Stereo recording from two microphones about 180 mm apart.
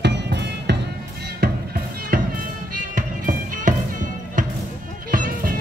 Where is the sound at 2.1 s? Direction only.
50° right (ahead or behind).